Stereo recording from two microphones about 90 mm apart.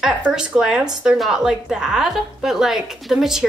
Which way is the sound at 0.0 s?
5° right (ahead or behind).